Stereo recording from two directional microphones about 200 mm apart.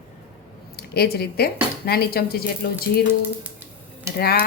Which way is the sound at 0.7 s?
55° left (ahead or behind).